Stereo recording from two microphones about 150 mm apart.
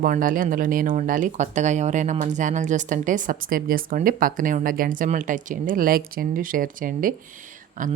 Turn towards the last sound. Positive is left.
turn(degrees=-60)  # may be behind; listen again after turning